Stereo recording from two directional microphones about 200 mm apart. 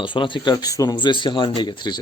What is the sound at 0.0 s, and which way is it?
Speech, 25° left (ahead or behind).